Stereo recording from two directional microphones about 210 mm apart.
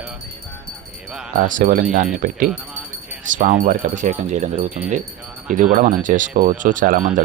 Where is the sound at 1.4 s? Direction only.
40° right (ahead or behind).